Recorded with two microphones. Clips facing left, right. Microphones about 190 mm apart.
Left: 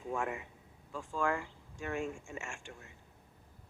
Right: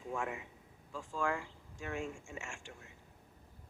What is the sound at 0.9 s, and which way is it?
Speech, 55° left (ahead or behind).